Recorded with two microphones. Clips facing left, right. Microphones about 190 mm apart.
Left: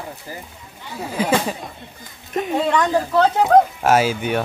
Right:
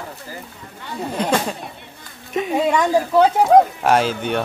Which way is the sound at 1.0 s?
5° left (ahead or behind).